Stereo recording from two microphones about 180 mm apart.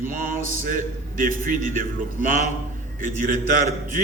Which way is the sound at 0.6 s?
45° right (ahead or behind).